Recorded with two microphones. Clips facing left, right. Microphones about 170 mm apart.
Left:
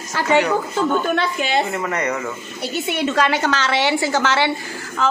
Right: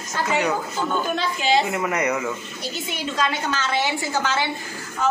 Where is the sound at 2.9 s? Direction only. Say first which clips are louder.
Left 7 dB; 70° left (ahead or behind).